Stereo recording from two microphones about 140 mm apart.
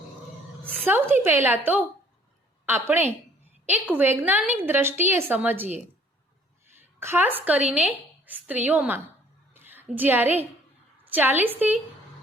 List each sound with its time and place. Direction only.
0.8 s a woman's voice: 15° right (ahead or behind)
6.7 s a woman's voice: 15° right (ahead or behind)
9.5 s a sound: 15° right (ahead or behind)
11.1 s a woman's voice: 15° right (ahead or behind)